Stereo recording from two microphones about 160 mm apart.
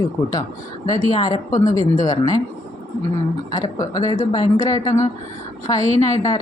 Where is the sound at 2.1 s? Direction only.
20° left (ahead or behind).